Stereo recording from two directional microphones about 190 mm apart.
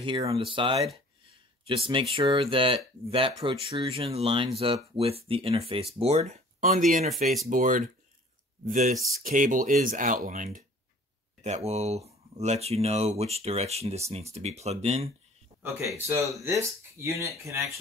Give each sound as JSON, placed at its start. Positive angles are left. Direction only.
{"t": 0.0, "sound": "speech", "side_deg": -25}
{"t": 16.3, "sound": "speech", "side_deg": -15}